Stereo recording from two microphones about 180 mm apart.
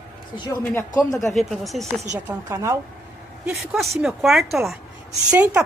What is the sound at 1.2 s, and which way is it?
Speech, centre (ahead or behind).